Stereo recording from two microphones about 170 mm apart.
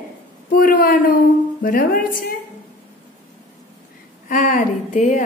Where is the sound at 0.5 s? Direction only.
55° left (ahead or behind).